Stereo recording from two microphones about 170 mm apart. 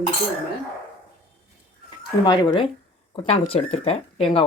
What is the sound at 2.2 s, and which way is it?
Speech, 25° left (ahead or behind).